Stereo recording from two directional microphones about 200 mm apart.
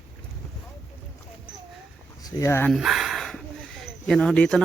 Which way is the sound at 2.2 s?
15° left (ahead or behind).